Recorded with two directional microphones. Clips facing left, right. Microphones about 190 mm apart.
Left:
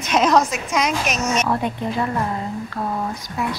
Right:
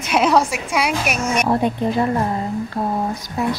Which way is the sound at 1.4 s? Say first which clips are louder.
Right 4 dB; 30° right (ahead or behind).